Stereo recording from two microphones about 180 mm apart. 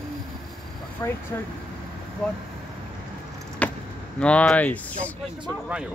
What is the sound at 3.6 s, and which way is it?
Vehicle, 10° left (ahead or behind).